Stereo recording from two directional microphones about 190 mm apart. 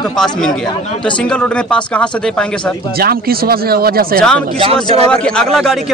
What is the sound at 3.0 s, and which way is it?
Speech, 55° right (ahead or behind).